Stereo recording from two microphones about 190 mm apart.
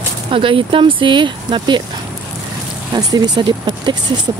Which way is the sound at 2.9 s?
20° right (ahead or behind).